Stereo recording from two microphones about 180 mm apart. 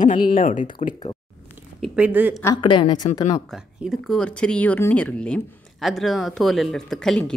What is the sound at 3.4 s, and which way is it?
A woman's voice, centre (ahead or behind).